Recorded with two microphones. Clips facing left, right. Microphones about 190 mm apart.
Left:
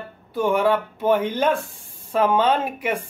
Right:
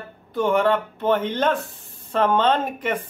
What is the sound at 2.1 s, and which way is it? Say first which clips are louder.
Speech: even; 10° left (ahead or behind).